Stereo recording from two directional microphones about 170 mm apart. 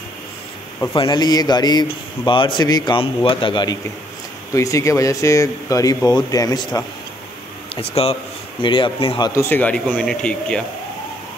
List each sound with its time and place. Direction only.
0.9 s a man's voice: 25° left (ahead or behind)
4.6 s a man's voice: 20° left (ahead or behind)
7.7 s a man's voice: 35° left (ahead or behind)
9.3 s speech: 15° left (ahead or behind)